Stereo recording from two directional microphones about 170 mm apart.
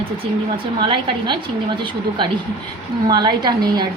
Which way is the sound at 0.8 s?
30° right (ahead or behind).